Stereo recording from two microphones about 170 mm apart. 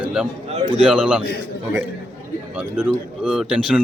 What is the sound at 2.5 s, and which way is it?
Speech, 10° right (ahead or behind).